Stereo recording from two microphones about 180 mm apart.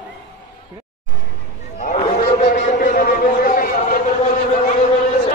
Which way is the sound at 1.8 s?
35° left (ahead or behind).